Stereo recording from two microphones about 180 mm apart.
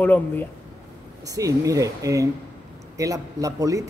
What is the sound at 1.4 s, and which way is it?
A man's voice, 20° right (ahead or behind).